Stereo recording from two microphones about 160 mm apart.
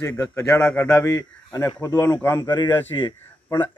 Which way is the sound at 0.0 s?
15° left (ahead or behind).